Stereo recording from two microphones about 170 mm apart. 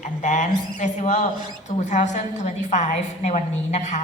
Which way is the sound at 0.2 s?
45° left (ahead or behind).